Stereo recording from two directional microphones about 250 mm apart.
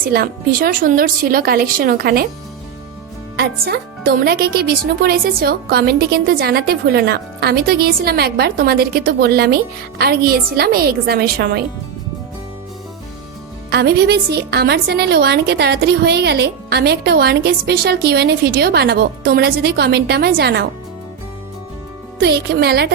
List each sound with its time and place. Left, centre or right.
0.0 s a woman's voice: right
3.7 s a woman's voice: right
13.7 s a woman's voice: right
22.2 s a woman's voice: right